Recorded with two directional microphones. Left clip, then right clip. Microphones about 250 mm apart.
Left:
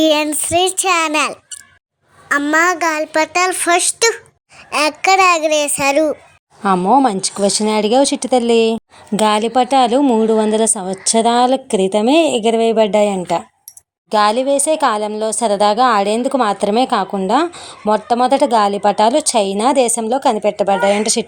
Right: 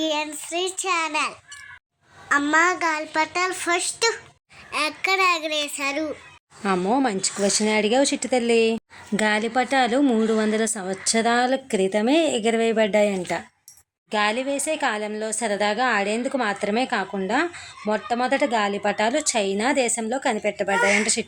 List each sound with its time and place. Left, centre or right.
0.0 s a child's voice: left